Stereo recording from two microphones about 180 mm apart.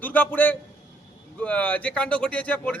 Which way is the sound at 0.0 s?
10° left (ahead or behind).